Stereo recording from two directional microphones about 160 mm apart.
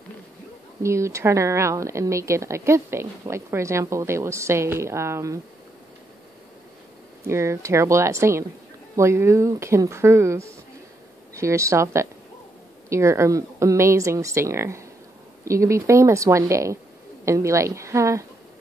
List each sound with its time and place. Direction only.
0.8 s a woman's voice: 20° right (ahead or behind)
7.2 s a woman's voice: 15° right (ahead or behind)